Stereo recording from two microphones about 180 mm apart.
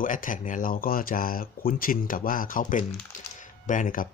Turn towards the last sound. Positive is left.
turn(degrees=50)  # may be behind; listen again after turning